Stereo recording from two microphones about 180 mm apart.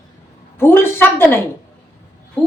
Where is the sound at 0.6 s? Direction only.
10° left (ahead or behind).